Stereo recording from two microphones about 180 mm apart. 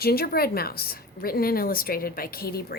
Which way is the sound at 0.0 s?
60° left (ahead or behind).